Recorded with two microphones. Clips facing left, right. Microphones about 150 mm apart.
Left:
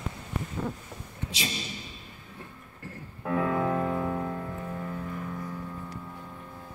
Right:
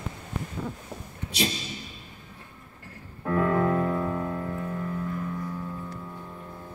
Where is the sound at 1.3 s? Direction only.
65° right (ahead or behind).